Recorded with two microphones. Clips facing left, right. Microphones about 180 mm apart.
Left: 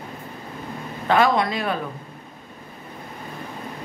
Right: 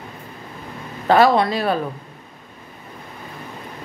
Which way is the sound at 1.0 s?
35° right (ahead or behind).